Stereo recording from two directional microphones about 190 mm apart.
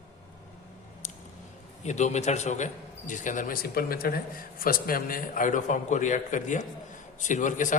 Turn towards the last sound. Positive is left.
turn(degrees=40)  # may be behind; listen again after turning